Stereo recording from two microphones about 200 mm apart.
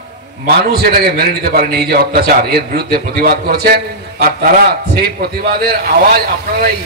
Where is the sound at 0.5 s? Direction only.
50° right (ahead or behind).